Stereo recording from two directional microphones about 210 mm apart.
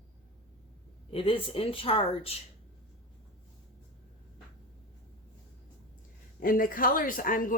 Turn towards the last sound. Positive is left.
turn(degrees=40)  # may be behind; listen again after turning